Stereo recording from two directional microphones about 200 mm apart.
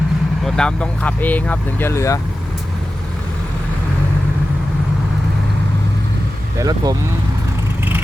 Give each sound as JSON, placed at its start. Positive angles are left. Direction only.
{"t": 0.4, "sound": "speech", "side_deg": 5}
{"t": 6.6, "sound": "speech", "side_deg": -20}